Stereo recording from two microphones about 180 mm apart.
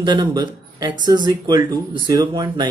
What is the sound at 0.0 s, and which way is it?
Speech, 25° right (ahead or behind).